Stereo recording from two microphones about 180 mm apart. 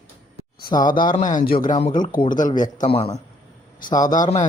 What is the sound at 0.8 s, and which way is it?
A man's voice, 50° left (ahead or behind).